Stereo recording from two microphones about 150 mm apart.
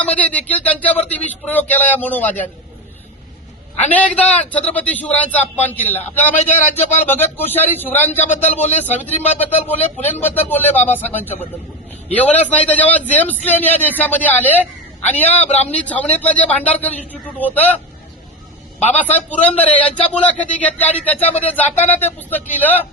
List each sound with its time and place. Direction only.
0.2 s a man's voice: 10° left (ahead or behind)
3.8 s a man's voice: 10° left (ahead or behind)
15.4 s speech: 45° left (ahead or behind)
15.7 s a man's voice: 10° left (ahead or behind)
18.9 s a man's voice: 10° left (ahead or behind)